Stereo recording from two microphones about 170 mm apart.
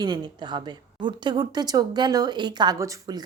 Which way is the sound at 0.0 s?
25° right (ahead or behind).